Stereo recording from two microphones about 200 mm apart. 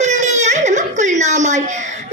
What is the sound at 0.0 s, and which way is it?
Baby cry, 35° right (ahead or behind).